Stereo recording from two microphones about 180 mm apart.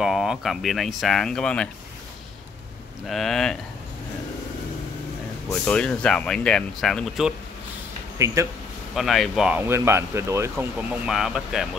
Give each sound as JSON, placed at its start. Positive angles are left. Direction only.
{"t": 0.0, "sound": "speech", "side_deg": -5}
{"t": 3.1, "sound": "speech", "side_deg": 0}
{"t": 5.5, "sound": "speech", "side_deg": 5}
{"t": 8.4, "sound": "speech", "side_deg": -15}
{"t": 8.9, "sound": "speech", "side_deg": 0}
{"t": 10.5, "sound": "speech", "side_deg": -5}